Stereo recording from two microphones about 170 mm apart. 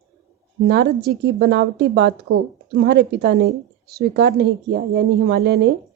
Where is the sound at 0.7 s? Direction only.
80° right.